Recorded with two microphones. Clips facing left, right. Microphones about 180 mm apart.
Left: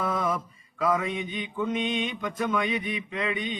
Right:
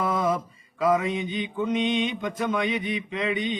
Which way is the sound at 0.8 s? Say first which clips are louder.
Right 3 dB; 25° right (ahead or behind).